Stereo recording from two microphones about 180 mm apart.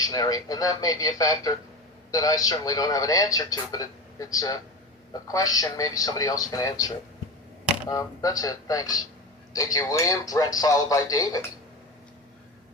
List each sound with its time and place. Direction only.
0.0 s a man's voice: 20° left (ahead or behind)